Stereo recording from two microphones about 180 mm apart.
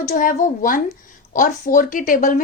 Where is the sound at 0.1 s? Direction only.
50° left (ahead or behind).